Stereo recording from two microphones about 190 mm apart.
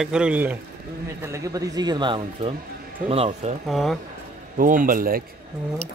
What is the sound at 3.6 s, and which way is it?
Speech, centre (ahead or behind).